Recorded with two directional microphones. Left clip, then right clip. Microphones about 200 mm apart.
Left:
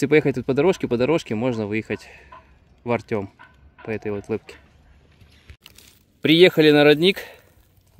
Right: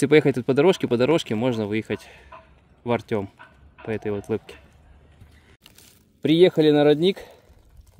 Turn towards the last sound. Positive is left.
turn(degrees=-5)  # may be behind; listen again after turning